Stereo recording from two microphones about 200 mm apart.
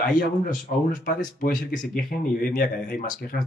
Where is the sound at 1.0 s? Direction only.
45° left (ahead or behind).